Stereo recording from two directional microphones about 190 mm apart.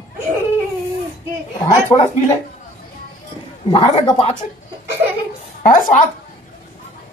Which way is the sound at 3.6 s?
25° left (ahead or behind).